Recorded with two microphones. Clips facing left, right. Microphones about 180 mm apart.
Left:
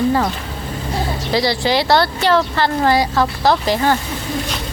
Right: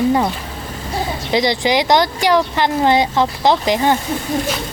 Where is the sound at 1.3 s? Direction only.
20° right (ahead or behind).